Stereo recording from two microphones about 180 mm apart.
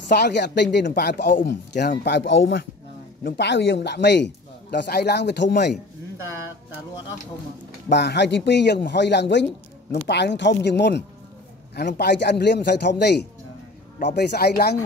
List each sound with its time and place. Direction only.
0.1 s a man's voice: 70° left (ahead or behind)
1.2 s speech: 45° left (ahead or behind)
1.5 s a man's voice: 70° left (ahead or behind); by 2.6 s 90° left
3.3 s a man's voice: 70° left (ahead or behind)
7.9 s a man's voice: 70° left (ahead or behind)